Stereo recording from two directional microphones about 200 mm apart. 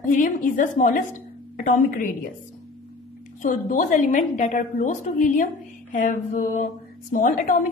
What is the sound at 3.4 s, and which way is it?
A woman's voice, 40° left (ahead or behind).